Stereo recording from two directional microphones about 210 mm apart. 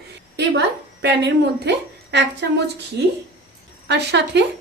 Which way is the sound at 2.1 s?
55° right (ahead or behind).